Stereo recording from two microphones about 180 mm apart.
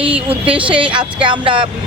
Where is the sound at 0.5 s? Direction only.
30° right (ahead or behind).